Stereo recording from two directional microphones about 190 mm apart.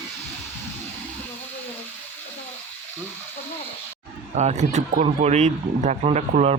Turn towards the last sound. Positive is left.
turn(degrees=-40)  # may be behind; listen again after turning